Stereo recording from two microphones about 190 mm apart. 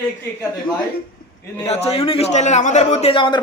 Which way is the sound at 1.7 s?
35° left (ahead or behind).